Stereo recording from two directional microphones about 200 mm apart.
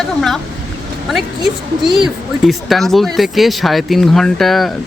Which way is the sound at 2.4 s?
Centre (ahead or behind).